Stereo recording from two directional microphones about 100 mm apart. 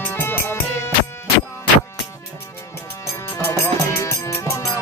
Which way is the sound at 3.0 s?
30° left (ahead or behind).